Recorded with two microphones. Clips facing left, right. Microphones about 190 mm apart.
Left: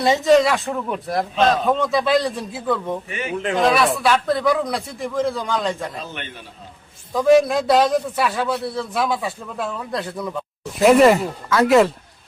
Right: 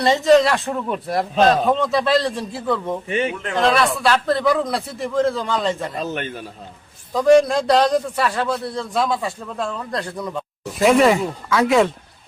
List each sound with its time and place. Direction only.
0.0 s a man's voice: centre (ahead or behind)
6.0 s a man's voice: 45° right (ahead or behind)
7.1 s a man's voice: centre (ahead or behind)